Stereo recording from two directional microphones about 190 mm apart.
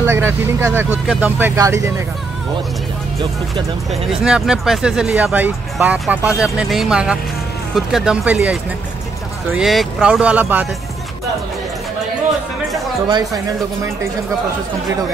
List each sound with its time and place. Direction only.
0.0 s speech: 15° right (ahead or behind)
3.9 s speech: 5° right (ahead or behind)
9.5 s speech: centre (ahead or behind)
12.7 s speech: 20° right (ahead or behind)